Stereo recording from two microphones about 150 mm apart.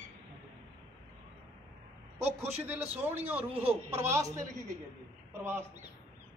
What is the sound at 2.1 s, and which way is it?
Speech, 45° right (ahead or behind).